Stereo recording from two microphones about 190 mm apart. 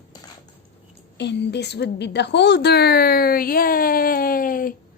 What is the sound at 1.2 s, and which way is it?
A woman's voice, 65° left (ahead or behind).